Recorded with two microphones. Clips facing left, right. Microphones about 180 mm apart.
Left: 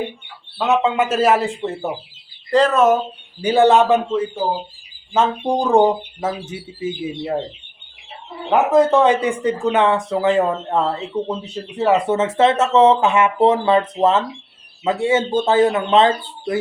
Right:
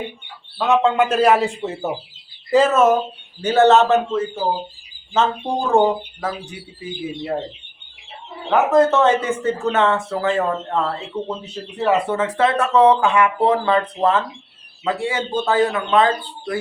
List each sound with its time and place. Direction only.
0.8 s a man's voice: 5° left (ahead or behind)
3.4 s speech: 10° left (ahead or behind)
8.4 s speech: 15° left (ahead or behind)